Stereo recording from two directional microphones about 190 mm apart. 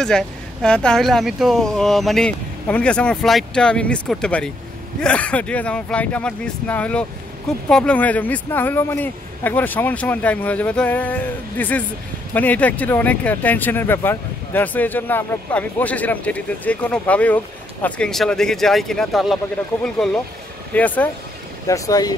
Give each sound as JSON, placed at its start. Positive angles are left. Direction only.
{"t": 0.0, "sound": "speech", "side_deg": 5}